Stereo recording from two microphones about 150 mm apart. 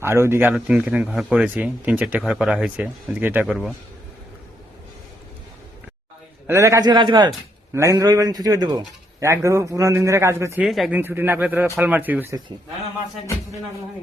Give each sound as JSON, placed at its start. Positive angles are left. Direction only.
{"t": 0.0, "sound": "speech", "side_deg": -15}
{"t": 3.5, "sound": "speech", "side_deg": 0}
{"t": 6.5, "sound": "a man's voice", "side_deg": -20}
{"t": 10.6, "sound": "speech", "side_deg": 0}
{"t": 10.9, "sound": "speech", "side_deg": -15}